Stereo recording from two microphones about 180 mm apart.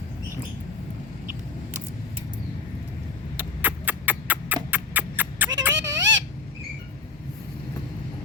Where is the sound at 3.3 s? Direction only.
10° right (ahead or behind).